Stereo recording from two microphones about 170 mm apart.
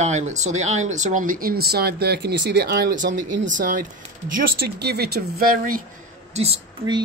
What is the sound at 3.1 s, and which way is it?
Speech, 90° right.